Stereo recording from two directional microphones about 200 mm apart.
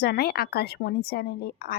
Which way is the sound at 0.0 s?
50° left (ahead or behind).